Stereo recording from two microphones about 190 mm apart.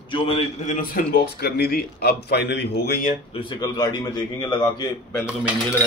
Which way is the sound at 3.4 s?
25° left (ahead or behind).